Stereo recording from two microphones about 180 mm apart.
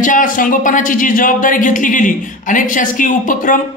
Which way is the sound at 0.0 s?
50° left (ahead or behind).